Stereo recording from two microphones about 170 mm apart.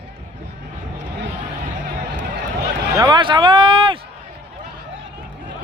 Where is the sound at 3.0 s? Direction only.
25° right (ahead or behind).